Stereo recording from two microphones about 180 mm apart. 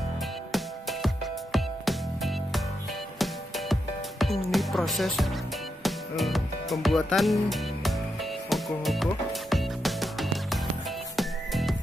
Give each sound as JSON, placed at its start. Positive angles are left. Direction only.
{"t": 0.5, "sound": "music", "side_deg": 0}